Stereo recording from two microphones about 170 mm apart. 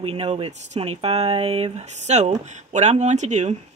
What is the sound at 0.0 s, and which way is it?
Speech, 35° right (ahead or behind).